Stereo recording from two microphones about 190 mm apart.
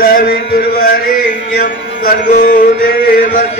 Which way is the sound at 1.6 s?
55° left (ahead or behind).